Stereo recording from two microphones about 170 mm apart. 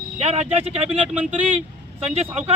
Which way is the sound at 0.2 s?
40° right (ahead or behind).